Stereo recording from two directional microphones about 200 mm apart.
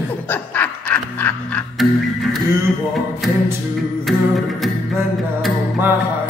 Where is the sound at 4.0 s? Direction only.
Centre (ahead or behind).